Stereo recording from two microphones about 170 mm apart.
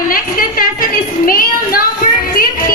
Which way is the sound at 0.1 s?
55° left (ahead or behind).